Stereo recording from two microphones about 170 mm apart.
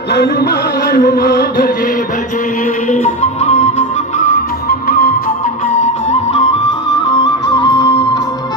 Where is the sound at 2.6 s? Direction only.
45° left (ahead or behind).